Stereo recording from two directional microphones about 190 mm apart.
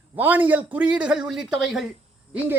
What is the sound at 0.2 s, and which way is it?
A man's voice, 10° right (ahead or behind).